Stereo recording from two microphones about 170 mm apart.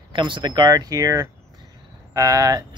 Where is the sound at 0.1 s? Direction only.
30° right (ahead or behind).